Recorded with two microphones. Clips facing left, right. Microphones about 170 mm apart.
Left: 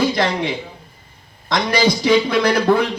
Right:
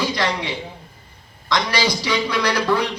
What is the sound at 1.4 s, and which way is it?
Speech, 50° left (ahead or behind).